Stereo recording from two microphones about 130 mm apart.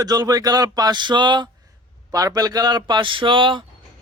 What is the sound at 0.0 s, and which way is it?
Speech, 30° right (ahead or behind).